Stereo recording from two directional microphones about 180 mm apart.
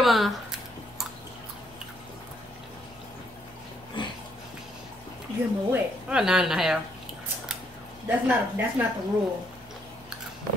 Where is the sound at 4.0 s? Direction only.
25° left (ahead or behind).